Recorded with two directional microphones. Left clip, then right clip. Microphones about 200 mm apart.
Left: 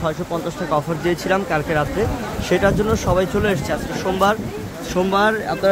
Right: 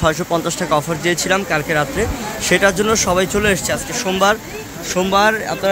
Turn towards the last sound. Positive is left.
turn(degrees=-5)  # may be behind; listen again after turning